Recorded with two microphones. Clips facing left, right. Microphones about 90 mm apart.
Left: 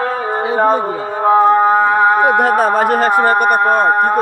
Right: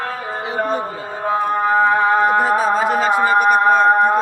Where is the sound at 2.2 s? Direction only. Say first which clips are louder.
Left 3 dB; 70° left (ahead or behind).